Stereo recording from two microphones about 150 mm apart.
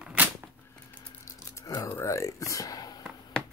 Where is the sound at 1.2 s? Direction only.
20° left (ahead or behind).